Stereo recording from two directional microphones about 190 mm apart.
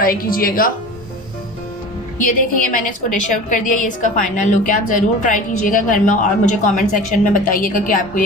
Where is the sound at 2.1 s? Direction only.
45° left (ahead or behind).